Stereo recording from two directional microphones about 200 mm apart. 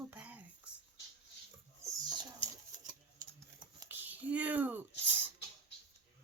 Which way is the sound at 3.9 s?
10° right (ahead or behind).